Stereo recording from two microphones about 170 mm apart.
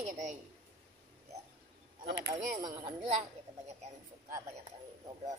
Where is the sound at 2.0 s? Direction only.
70° right (ahead or behind).